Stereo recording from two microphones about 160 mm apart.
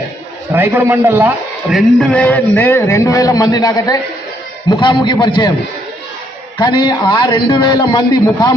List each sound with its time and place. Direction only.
0.5 s a man's voice: 15° right (ahead or behind)
1.7 s a man's voice: 5° left (ahead or behind); by 5.5 s 30° left (ahead or behind)
6.6 s a man's voice: 30° left (ahead or behind)